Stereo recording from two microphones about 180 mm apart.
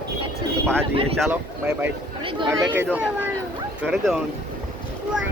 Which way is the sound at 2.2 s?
30° right (ahead or behind).